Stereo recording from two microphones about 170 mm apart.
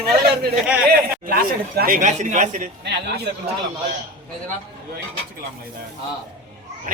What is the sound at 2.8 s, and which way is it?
Speech, 85° right.